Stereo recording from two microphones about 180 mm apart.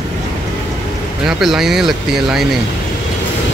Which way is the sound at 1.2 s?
Centre (ahead or behind).